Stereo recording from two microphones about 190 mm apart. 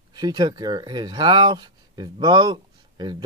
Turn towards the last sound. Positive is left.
turn(degrees=-20)  # may be behind; listen again after turning